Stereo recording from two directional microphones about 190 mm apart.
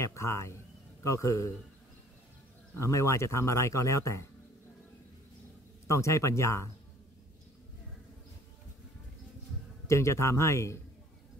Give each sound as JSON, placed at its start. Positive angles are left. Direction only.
{"t": 0.0, "sound": "a man's voice", "side_deg": 15}
{"t": 2.7, "sound": "a man's voice", "side_deg": 15}
{"t": 5.9, "sound": "a man's voice", "side_deg": 15}
{"t": 9.8, "sound": "a man's voice", "side_deg": 15}